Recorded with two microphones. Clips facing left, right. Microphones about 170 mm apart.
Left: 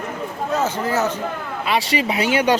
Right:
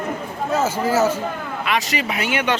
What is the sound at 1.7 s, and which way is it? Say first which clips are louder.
Speech: left 3 dB; 30° left (ahead or behind).